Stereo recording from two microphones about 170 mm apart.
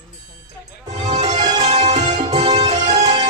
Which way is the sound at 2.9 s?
25° right (ahead or behind).